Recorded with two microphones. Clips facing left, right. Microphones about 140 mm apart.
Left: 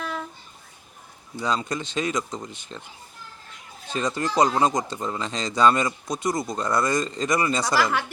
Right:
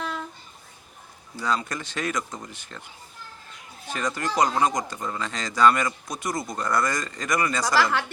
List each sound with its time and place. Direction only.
1.4 s speech: 20° left (ahead or behind)
3.8 s speech: 20° left (ahead or behind)